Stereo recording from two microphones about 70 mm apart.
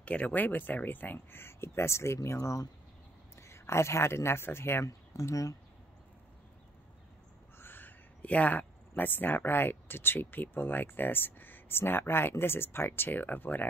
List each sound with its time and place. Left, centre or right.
0.0 s speech: centre; by 2.1 s left
3.3 s speech: left
4.8 s speech: left
7.5 s speech: left